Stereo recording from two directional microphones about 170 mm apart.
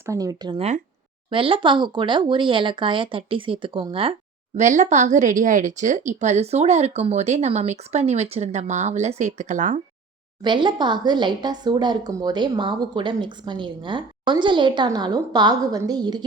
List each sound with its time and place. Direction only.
0.0 s speech: 20° right (ahead or behind)
4.5 s a woman's voice: 45° right (ahead or behind)
10.4 s speech: 30° right (ahead or behind)